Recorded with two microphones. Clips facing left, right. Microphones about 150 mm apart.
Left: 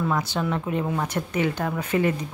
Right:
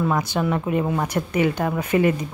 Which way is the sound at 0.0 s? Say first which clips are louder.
Right 3 dB; 15° right (ahead or behind).